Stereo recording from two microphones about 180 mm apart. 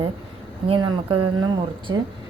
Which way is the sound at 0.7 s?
25° right (ahead or behind).